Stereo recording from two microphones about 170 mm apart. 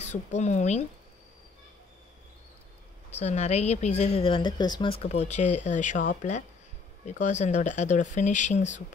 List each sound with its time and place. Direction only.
0.0 s speech: 45° left (ahead or behind)
3.1 s a woman's voice: 40° left (ahead or behind)